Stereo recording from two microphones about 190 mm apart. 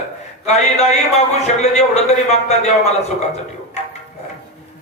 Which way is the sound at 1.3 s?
35° left (ahead or behind).